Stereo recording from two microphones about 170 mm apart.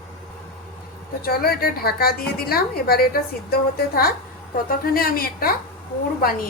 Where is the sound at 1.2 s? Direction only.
65° left (ahead or behind).